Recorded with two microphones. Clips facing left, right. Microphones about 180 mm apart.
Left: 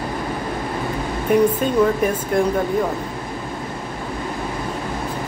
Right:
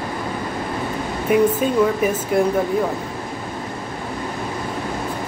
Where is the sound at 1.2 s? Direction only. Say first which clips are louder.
Even; 5° right (ahead or behind).